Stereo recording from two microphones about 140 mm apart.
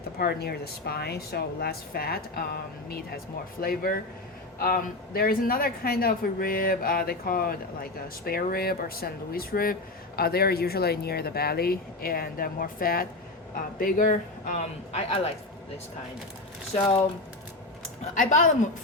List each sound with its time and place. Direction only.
0.2 s speech: 90° left
3.6 s speech: 90° left
13.7 s speech: 75° left (ahead or behind); by 15.3 s 50° left (ahead or behind)
18.1 s speech: 65° left (ahead or behind)